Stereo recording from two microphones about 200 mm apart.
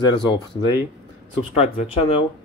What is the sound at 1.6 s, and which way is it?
Speech, 30° left (ahead or behind).